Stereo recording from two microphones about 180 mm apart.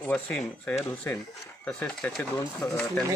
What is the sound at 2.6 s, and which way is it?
Speech, 20° left (ahead or behind).